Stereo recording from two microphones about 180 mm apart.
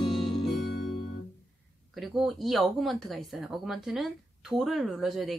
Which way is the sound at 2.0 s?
Centre (ahead or behind).